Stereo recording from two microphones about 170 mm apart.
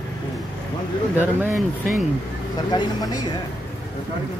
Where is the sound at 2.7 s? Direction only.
25° left (ahead or behind).